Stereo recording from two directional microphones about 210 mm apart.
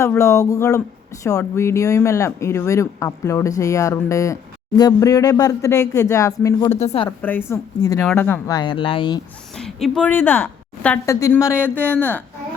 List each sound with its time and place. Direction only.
0.0 s speech: 15° left (ahead or behind)
6.7 s speech: 30° left (ahead or behind)
7.2 s speech: 10° left (ahead or behind)
9.6 s speech: centre (ahead or behind)